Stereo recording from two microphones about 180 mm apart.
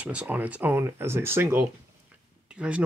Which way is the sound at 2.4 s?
5° right (ahead or behind).